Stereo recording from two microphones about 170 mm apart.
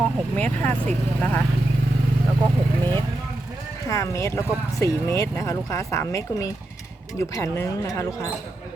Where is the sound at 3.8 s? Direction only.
20° left (ahead or behind).